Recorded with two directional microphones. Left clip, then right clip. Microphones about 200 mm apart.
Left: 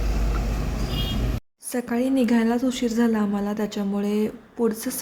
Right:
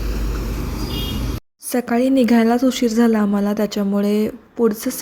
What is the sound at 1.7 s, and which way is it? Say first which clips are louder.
Speech: right 7 dB; 30° right (ahead or behind).